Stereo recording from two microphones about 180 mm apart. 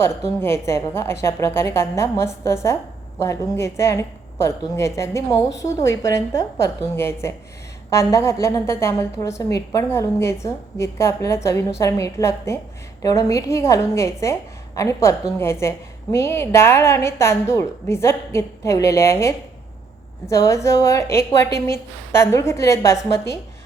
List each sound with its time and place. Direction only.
0.3 s a woman's voice: 15° left (ahead or behind)
16.1 s a woman's voice: 15° left (ahead or behind)